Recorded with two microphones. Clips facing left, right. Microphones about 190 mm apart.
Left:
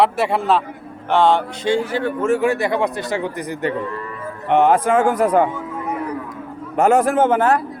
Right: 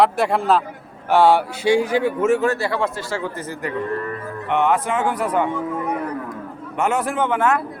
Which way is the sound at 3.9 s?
55° right (ahead or behind).